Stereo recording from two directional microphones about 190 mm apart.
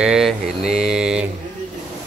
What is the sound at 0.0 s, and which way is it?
Speech, centre (ahead or behind).